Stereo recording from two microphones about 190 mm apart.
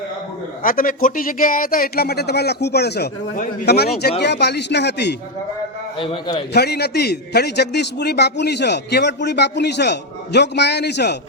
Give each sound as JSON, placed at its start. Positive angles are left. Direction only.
{"t": 0.6, "sound": "a man's voice", "side_deg": 45}
{"t": 6.0, "sound": "a man's voice", "side_deg": 25}
{"t": 6.5, "sound": "a man's voice", "side_deg": 60}